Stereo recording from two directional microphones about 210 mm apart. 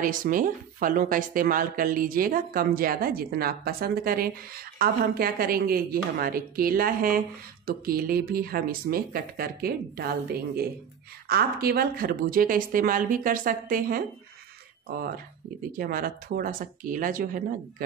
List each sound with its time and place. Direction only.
0.0 s speech: 40° right (ahead or behind)
15.8 s speech: 45° right (ahead or behind)